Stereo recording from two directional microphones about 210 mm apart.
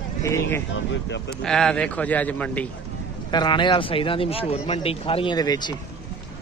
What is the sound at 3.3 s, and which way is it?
A man's voice, 20° left (ahead or behind).